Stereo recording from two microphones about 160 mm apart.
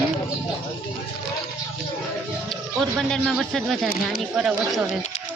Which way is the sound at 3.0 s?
5° left (ahead or behind).